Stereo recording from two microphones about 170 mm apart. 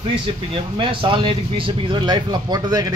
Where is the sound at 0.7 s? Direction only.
30° right (ahead or behind).